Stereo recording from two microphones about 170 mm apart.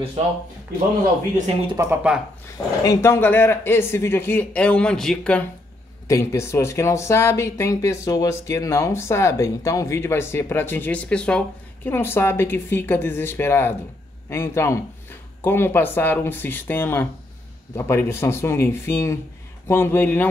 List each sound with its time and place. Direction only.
1.8 s speech: 10° right (ahead or behind)
2.5 s speech: 20° left (ahead or behind); by 5.4 s 5° left (ahead or behind)
6.0 s speech: 15° left (ahead or behind)